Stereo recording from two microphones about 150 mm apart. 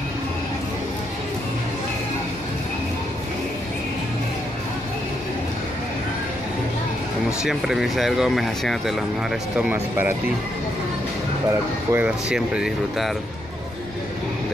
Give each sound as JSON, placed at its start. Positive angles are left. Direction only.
{"t": 7.4, "sound": "speech", "side_deg": 0}
{"t": 11.9, "sound": "speech", "side_deg": -10}